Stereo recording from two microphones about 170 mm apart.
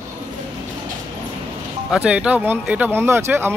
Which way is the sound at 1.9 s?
5° right (ahead or behind).